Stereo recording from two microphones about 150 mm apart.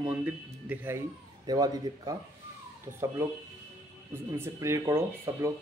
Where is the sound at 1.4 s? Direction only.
25° right (ahead or behind).